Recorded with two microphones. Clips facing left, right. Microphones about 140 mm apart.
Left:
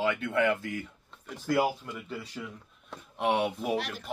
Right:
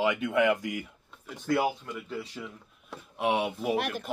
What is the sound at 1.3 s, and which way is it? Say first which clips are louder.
Speech: even; centre (ahead or behind).